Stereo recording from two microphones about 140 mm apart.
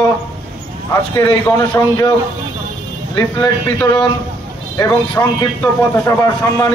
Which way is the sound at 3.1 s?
30° left (ahead or behind).